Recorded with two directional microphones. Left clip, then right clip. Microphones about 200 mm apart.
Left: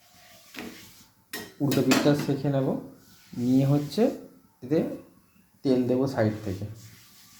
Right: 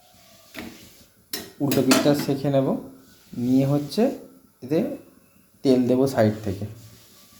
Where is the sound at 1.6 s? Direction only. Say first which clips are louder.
Right 3 dB; centre (ahead or behind).